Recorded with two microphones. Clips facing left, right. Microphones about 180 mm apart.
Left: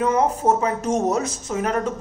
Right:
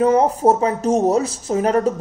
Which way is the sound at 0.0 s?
35° right (ahead or behind).